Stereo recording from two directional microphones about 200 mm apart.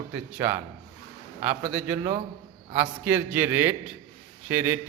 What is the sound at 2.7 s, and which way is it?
A man's voice, 10° right (ahead or behind).